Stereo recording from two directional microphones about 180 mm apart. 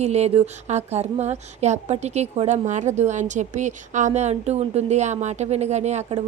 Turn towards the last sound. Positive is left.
turn(degrees=-40)  # may be behind; listen again after turning